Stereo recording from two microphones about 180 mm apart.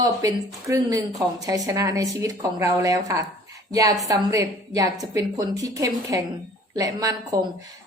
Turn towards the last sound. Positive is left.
turn(degrees=-20)  # may be behind; listen again after turning